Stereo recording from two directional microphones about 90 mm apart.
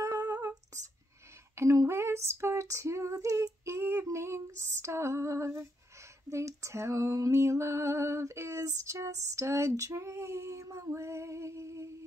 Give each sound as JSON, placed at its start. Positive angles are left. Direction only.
{"t": 0.0, "sound": "humming", "side_deg": -40}
{"t": 1.5, "sound": "female singing", "side_deg": -35}